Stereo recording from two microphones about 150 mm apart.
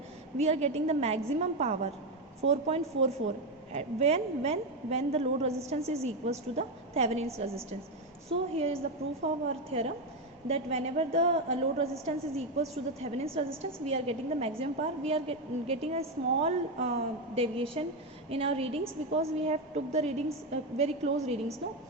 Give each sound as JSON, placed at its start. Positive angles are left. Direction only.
{"t": 0.3, "sound": "a woman's voice", "side_deg": -45}
{"t": 8.3, "sound": "a woman's voice", "side_deg": -40}